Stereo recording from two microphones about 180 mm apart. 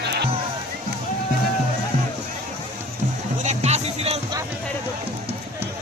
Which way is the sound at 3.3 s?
40° right (ahead or behind).